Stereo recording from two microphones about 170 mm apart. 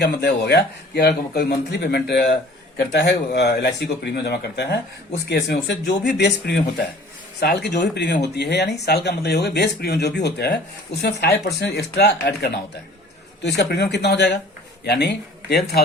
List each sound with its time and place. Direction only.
0.0 s speech: 70° left (ahead or behind)